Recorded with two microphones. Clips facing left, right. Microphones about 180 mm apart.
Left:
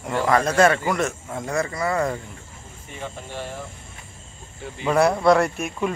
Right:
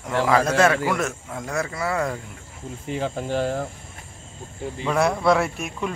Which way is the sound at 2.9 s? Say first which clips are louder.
Right 9 dB; 90° right.